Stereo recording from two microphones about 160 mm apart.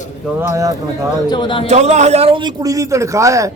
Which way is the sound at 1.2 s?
30° left (ahead or behind).